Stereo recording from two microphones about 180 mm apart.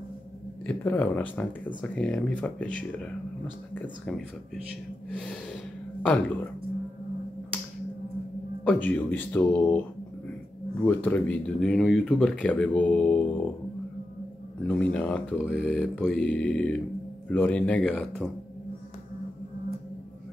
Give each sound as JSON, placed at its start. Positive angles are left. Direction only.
{"t": 0.7, "sound": "speech", "side_deg": 10}
{"t": 5.1, "sound": "gasp", "side_deg": 5}
{"t": 8.6, "sound": "speech", "side_deg": 10}
{"t": 10.8, "sound": "speech", "side_deg": 10}
{"t": 14.6, "sound": "speech", "side_deg": 10}